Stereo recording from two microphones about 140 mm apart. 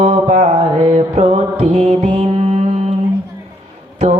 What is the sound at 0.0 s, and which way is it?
Mantra, 50° right (ahead or behind).